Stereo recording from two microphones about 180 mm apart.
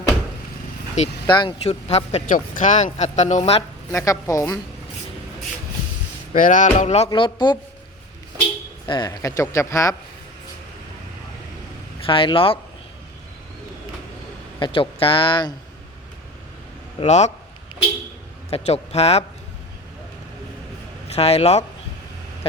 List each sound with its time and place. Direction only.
1.0 s speech: 40° left (ahead or behind)
1.3 s speech: 25° left (ahead or behind)
3.9 s speech: 15° left (ahead or behind)
6.3 s speech: 45° left (ahead or behind)
7.1 s speech: 25° left (ahead or behind)
8.9 s speech: 25° left (ahead or behind)
12.0 s speech: 30° left (ahead or behind)
14.6 s speech: 30° left (ahead or behind)
17.0 s speech: 40° left (ahead or behind)
18.5 s speech: 35° left (ahead or behind)
21.2 s speech: 35° left (ahead or behind)